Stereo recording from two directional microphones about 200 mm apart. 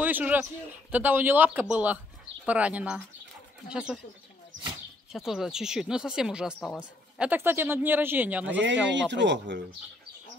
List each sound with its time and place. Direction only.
0.0 s a man's voice: 10° right (ahead or behind)
5.1 s speech: centre (ahead or behind)
8.9 s speech: 60° right (ahead or behind)